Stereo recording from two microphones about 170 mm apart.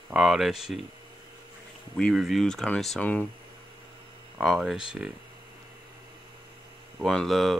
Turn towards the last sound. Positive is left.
turn(degrees=0)  # may be behind; listen again after turning